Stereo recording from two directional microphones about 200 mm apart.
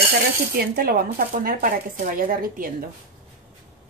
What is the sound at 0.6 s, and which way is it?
Speech, 50° right (ahead or behind).